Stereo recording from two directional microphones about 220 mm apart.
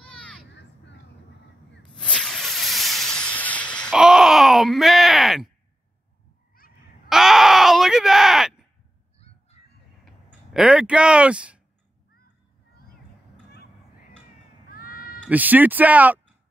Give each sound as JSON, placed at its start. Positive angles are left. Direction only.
{"t": 0.0, "sound": "vehicle", "side_deg": 5}
{"t": 0.5, "sound": "vehicle", "side_deg": 50}
{"t": 2.0, "sound": "hiss", "side_deg": 5}
{"t": 3.8, "sound": "groan", "side_deg": 0}
{"t": 6.6, "sound": "goose", "side_deg": 40}
{"t": 7.1, "sound": "a sound", "side_deg": 0}
{"t": 10.5, "sound": "speech", "side_deg": -5}
{"t": 12.7, "sound": "vehicle", "side_deg": 40}
{"t": 14.7, "sound": "sheep", "side_deg": 40}
{"t": 15.2, "sound": "speech", "side_deg": -5}